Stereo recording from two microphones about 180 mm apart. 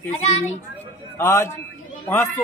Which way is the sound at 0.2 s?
35° left (ahead or behind).